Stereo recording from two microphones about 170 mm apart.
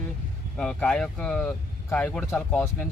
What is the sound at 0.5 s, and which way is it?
Speech, 5° left (ahead or behind).